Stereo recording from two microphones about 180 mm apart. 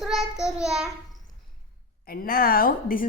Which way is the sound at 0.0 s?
Centre (ahead or behind).